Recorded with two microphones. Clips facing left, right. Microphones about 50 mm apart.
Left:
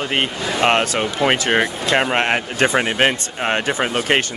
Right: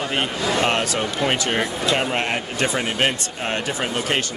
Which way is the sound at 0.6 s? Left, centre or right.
Left.